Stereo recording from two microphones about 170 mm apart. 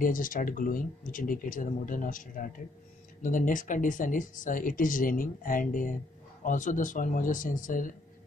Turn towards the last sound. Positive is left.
turn(degrees=50)  # may be behind; listen again after turning